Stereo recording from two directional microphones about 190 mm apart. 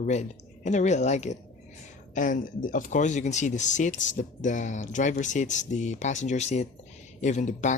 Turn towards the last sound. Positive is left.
turn(degrees=40)  # may be behind; listen again after turning